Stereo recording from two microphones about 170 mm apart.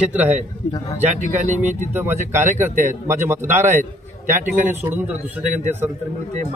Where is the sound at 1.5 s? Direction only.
45° right (ahead or behind).